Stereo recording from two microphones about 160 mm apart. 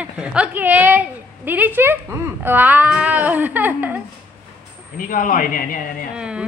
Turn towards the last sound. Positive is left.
turn(degrees=60)  # may be behind; listen again after turning